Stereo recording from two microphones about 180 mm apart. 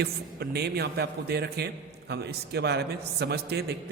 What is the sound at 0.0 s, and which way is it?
A man's voice, 65° right (ahead or behind).